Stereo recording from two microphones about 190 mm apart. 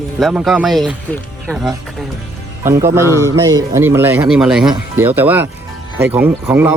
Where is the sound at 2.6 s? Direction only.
15° right (ahead or behind).